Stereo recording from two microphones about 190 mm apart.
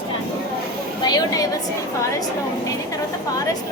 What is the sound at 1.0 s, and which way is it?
Speech, 20° left (ahead or behind).